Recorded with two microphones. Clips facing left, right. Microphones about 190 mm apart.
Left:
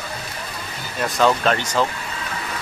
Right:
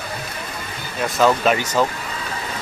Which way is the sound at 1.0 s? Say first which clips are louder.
Right 1 dB; 5° right (ahead or behind).